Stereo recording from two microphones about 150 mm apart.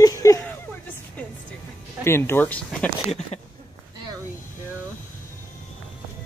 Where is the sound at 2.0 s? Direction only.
15° left (ahead or behind).